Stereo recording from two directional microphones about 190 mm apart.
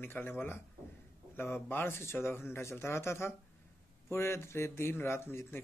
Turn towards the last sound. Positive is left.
turn(degrees=10)  # may be behind; listen again after turning